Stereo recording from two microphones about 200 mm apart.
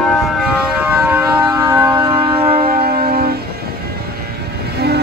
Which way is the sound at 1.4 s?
20° right (ahead or behind).